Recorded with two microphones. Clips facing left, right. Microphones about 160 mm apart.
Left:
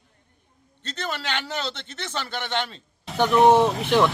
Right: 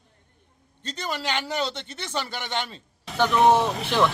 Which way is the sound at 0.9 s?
10° right (ahead or behind).